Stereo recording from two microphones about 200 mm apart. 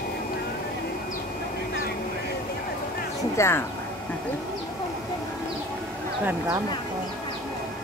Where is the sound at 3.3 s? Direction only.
15° left (ahead or behind).